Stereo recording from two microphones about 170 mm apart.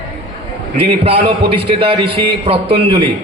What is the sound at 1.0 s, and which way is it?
Speech, 35° right (ahead or behind).